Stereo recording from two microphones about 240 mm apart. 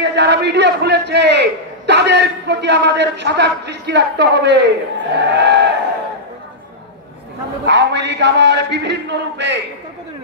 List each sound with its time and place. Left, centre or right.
0.0 s a man's voice: right
7.6 s music: right